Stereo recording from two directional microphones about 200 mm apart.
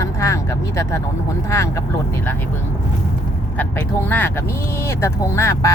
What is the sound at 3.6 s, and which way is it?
Speech, 10° left (ahead or behind).